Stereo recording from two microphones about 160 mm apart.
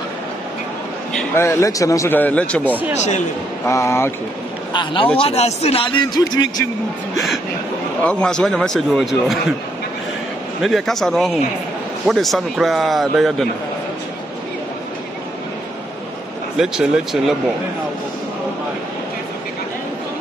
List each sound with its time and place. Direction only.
1.3 s speech: 15° left (ahead or behind)
2.9 s speech: 45° left (ahead or behind)
3.6 s speech: 20° left (ahead or behind)
4.7 s a man's voice: 30° left (ahead or behind)
8.0 s speech: 5° left (ahead or behind)
10.6 s speech: centre (ahead or behind)
16.5 s speech: 5° right (ahead or behind)